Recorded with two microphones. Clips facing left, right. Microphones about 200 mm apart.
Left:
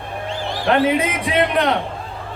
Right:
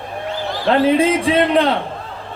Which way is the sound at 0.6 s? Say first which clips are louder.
Right 3 dB; 30° right (ahead or behind).